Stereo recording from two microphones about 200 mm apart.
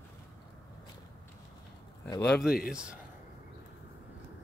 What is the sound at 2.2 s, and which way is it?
Speech, centre (ahead or behind).